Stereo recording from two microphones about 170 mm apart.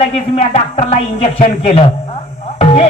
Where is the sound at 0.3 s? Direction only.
35° left (ahead or behind).